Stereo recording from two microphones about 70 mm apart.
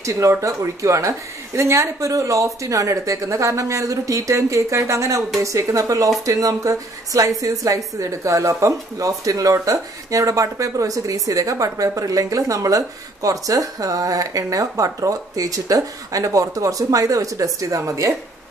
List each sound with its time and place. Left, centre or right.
0.0 s speech: right